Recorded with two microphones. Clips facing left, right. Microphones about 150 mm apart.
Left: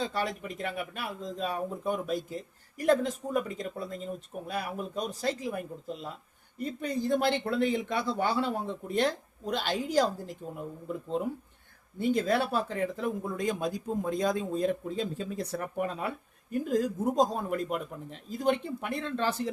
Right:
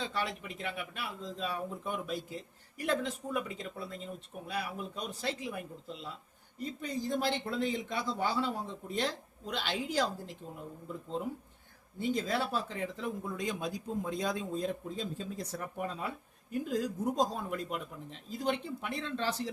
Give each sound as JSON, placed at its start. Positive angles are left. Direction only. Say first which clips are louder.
{"t": 0.0, "sound": "speech", "louder": "left 4 dB", "side_deg": 40}
{"t": 6.6, "sound": "speech", "louder": "left 5 dB", "side_deg": 60}
{"t": 11.9, "sound": "speech", "louder": "left 6 dB", "side_deg": 60}